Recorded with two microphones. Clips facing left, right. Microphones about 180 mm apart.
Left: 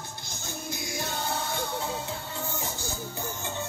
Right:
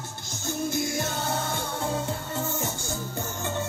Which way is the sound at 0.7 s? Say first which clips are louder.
Right 6 dB; 50° right (ahead or behind).